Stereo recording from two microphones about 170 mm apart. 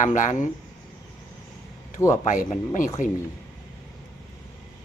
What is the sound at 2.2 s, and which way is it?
Speech, 50° left (ahead or behind).